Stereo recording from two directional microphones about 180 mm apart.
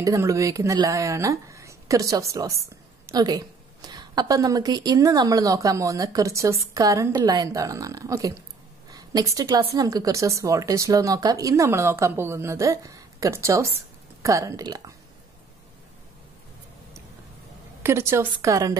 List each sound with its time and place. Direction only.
0.0 s a woman's voice: 15° right (ahead or behind)
17.8 s a woman's voice: 15° right (ahead or behind)